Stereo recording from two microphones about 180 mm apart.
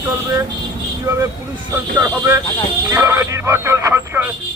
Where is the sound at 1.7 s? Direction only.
15° right (ahead or behind).